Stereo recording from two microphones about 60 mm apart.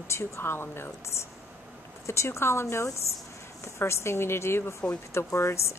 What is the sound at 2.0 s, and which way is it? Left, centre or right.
A woman's voice, left.